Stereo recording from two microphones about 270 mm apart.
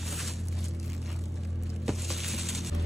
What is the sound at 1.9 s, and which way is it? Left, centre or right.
Music, centre.